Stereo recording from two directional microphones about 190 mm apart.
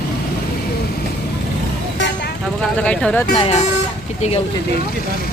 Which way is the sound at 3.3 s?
30° left (ahead or behind).